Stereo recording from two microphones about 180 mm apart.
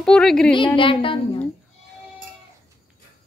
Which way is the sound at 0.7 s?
30° left (ahead or behind).